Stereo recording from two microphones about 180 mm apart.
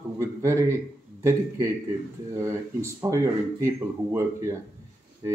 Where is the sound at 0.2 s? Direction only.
15° right (ahead or behind).